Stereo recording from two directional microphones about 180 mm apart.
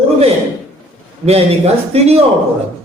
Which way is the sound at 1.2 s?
Centre (ahead or behind).